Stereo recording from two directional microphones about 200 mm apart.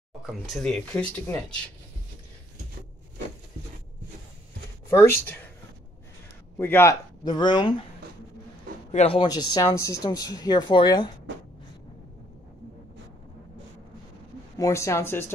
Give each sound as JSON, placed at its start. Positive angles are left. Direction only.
{"t": 0.3, "sound": "speech", "side_deg": 0}
{"t": 6.6, "sound": "speech", "side_deg": 10}
{"t": 8.9, "sound": "speech", "side_deg": 30}
{"t": 14.6, "sound": "speech", "side_deg": 15}